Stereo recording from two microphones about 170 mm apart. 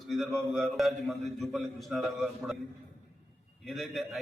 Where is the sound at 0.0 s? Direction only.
Centre (ahead or behind).